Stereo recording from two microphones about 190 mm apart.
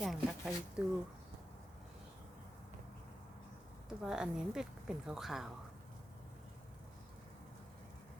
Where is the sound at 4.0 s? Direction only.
5° right (ahead or behind).